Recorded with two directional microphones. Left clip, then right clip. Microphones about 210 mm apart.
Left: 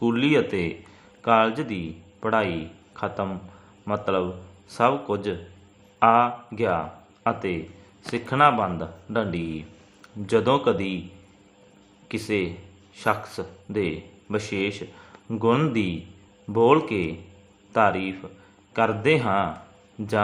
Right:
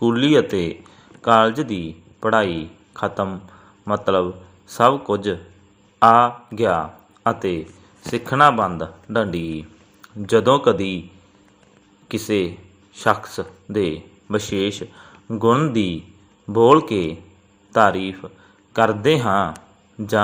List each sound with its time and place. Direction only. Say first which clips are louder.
0.0 s a man's voice: right 5 dB; 15° right (ahead or behind)
12.0 s a man's voice: right 5 dB; 15° right (ahead or behind)